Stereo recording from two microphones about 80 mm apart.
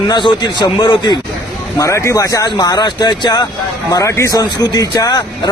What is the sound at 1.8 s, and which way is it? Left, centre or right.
Speech, left.